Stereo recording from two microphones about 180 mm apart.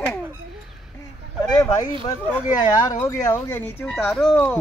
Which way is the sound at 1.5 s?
20° left (ahead or behind).